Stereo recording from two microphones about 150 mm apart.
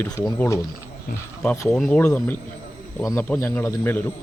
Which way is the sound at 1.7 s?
5° left (ahead or behind).